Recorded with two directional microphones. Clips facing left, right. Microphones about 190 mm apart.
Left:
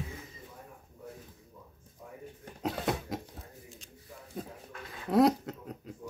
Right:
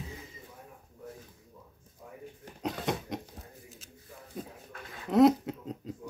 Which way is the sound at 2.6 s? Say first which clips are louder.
Left 1 dB; centre (ahead or behind).